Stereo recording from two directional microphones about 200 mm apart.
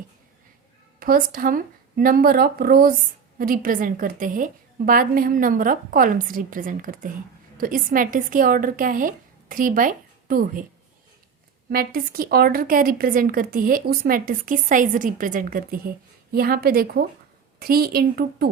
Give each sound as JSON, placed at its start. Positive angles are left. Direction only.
{"t": 0.9, "sound": "speech", "side_deg": -45}
{"t": 11.7, "sound": "speech", "side_deg": -50}